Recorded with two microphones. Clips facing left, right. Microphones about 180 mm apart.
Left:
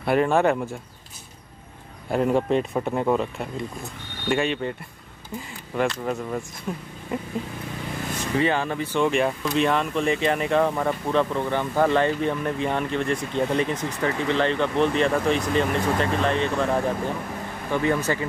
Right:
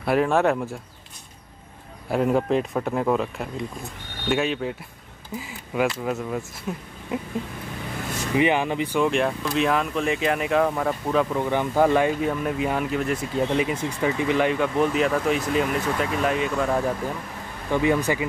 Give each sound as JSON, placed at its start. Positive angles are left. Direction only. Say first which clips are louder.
{"t": 0.0, "sound": "speech", "louder": "even", "side_deg": 0}
{"t": 2.0, "sound": "speech", "louder": "even", "side_deg": 0}
{"t": 8.4, "sound": "speech", "louder": "right 2 dB", "side_deg": -15}
{"t": 9.0, "sound": "speech", "louder": "left 2 dB", "side_deg": 0}